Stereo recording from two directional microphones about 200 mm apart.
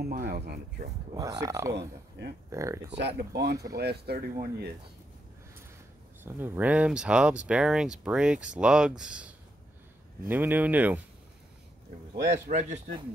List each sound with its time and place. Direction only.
0.0 s speech: 50° right (ahead or behind)
1.1 s speech: 15° right (ahead or behind)
1.7 s speech: 60° right (ahead or behind)
2.5 s speech: 15° right (ahead or behind)
2.9 s speech: 60° right (ahead or behind)
6.2 s speech: 10° right (ahead or behind)
12.4 s a man's voice: 40° right (ahead or behind)